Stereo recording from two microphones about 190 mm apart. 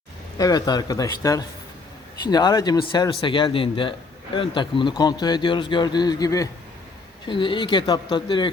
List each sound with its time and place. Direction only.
0.3 s a man's voice: 20° left (ahead or behind)